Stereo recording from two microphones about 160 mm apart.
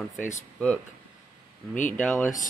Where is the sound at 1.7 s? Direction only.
50° left (ahead or behind).